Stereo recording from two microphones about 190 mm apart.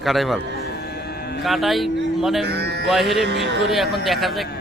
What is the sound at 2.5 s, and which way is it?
Livestock, 60° right (ahead or behind).